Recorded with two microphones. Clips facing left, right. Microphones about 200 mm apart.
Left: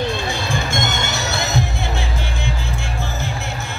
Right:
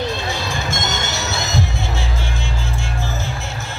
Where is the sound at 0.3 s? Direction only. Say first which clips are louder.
Left 1 dB; 55° left (ahead or behind).